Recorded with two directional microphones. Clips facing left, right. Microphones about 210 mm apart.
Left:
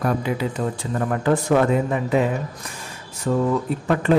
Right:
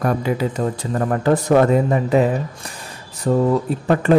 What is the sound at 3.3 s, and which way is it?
Speech, 35° right (ahead or behind).